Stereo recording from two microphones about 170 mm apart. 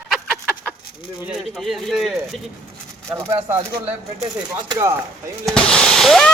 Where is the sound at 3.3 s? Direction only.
15° right (ahead or behind).